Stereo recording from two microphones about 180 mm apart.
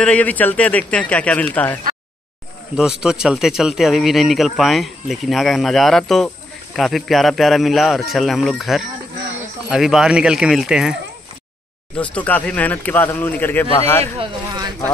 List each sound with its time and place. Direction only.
0.0 s speech: 10° left (ahead or behind)
3.0 s speech: 5° right (ahead or behind)
12.0 s speech: 10° left (ahead or behind)
14.1 s speech: 25° right (ahead or behind)